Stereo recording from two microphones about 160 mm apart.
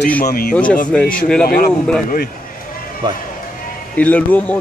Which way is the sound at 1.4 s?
65° left (ahead or behind).